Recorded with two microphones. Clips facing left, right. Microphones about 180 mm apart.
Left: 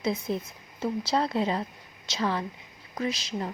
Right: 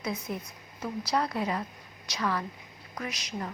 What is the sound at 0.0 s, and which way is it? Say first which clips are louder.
A woman's voice: left 5 dB; 25° left (ahead or behind).